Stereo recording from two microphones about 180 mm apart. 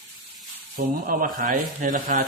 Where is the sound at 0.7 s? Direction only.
50° right (ahead or behind).